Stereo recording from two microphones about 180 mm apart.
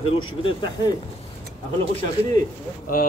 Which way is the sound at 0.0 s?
30° left (ahead or behind).